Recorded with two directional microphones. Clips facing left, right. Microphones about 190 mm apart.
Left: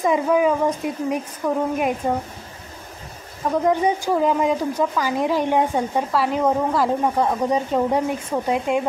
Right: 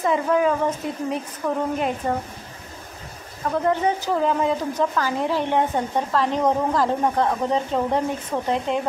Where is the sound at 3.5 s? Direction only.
15° left (ahead or behind).